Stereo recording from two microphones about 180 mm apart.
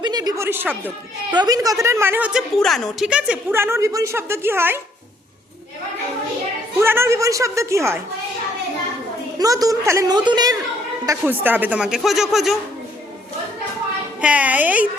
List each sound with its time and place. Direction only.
0.0 s a woman's voice: 25° right (ahead or behind)
2.6 s a woman's voice: centre (ahead or behind)
6.7 s a woman's voice: 15° right (ahead or behind)
9.4 s a woman's voice: 20° right (ahead or behind); by 12.5 s centre (ahead or behind)
14.2 s a woman's voice: 5° right (ahead or behind)